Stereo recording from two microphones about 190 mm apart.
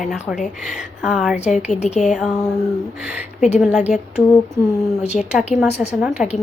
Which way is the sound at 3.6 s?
10° right (ahead or behind).